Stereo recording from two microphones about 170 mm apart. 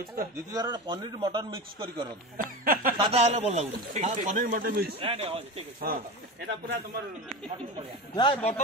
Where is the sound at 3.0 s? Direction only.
40° right (ahead or behind).